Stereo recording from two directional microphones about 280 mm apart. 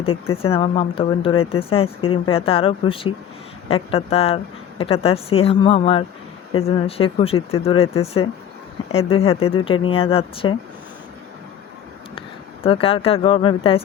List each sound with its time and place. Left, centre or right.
0.0 s speech: centre
12.6 s speech: centre